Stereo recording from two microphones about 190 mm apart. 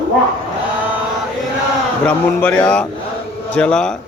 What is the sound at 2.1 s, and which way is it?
A man's voice, 5° left (ahead or behind).